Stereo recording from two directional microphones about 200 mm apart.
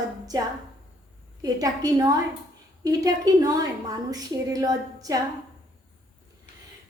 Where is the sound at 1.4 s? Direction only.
20° right (ahead or behind).